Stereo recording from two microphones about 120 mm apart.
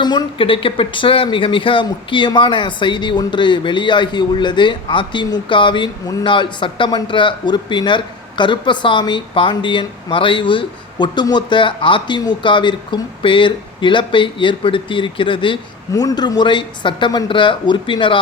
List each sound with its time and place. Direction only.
0.0 s speech: 40° left (ahead or behind)
15.9 s speech: 30° left (ahead or behind)